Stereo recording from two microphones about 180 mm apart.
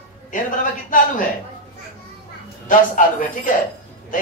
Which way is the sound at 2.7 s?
45° left (ahead or behind).